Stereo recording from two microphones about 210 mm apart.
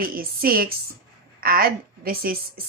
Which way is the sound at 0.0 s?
45° right (ahead or behind).